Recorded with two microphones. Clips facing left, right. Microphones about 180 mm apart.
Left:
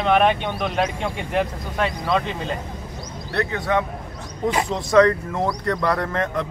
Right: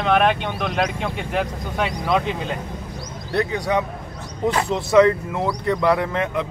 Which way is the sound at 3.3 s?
20° right (ahead or behind).